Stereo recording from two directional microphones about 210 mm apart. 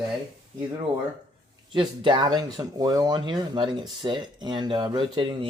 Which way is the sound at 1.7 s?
20° right (ahead or behind).